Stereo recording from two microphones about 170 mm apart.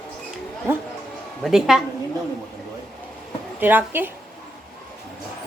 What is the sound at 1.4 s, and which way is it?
Speech, centre (ahead or behind).